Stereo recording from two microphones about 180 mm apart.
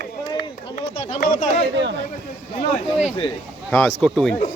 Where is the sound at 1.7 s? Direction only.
75° right (ahead or behind).